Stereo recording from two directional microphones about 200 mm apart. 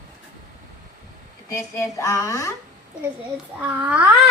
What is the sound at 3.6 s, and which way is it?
Speech, 5° right (ahead or behind).